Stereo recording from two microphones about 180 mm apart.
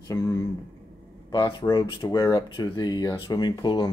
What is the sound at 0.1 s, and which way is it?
Speech, 20° left (ahead or behind).